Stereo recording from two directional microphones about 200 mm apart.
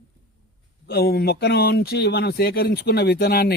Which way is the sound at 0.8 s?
50° left (ahead or behind).